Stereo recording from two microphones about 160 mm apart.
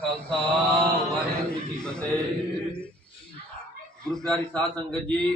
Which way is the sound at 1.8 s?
5° left (ahead or behind).